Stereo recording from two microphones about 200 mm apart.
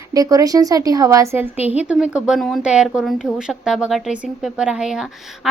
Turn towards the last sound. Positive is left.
turn(degrees=-5)  # may be behind; listen again after turning